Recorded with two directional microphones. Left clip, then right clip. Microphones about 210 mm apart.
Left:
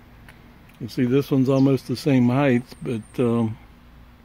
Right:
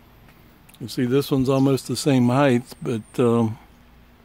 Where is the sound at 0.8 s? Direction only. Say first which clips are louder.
Even; 15° right (ahead or behind).